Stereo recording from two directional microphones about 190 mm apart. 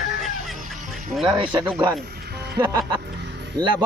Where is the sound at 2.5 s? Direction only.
25° right (ahead or behind).